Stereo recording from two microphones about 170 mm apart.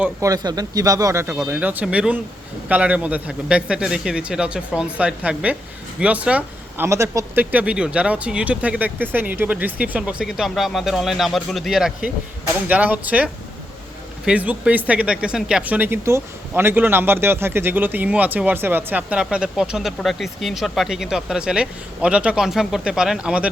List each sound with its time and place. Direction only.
0.0 s a man's voice: 20° right (ahead or behind)